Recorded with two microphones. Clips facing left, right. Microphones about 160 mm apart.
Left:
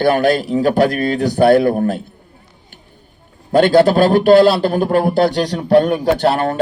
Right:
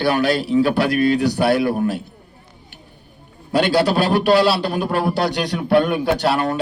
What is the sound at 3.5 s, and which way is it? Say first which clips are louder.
A man's voice: left 6 dB; 50° left (ahead or behind).